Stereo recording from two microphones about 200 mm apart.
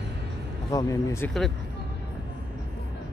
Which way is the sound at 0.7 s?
15° left (ahead or behind).